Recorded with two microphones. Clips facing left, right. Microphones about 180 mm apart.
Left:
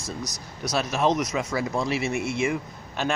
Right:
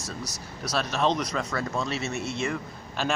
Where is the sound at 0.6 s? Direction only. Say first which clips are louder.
Left 2 dB; 15° left (ahead or behind).